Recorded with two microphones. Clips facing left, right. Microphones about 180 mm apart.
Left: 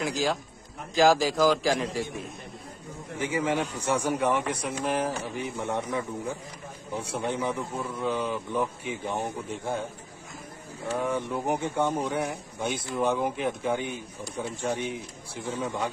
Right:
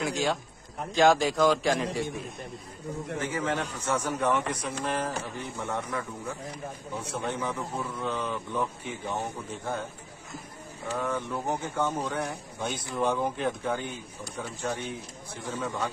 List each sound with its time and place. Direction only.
0.0 s a man's voice: centre (ahead or behind)
3.2 s speech: 15° left (ahead or behind)
10.9 s speech: 10° left (ahead or behind)